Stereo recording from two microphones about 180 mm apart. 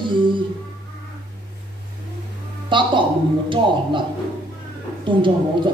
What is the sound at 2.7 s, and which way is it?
Speech, 25° right (ahead or behind).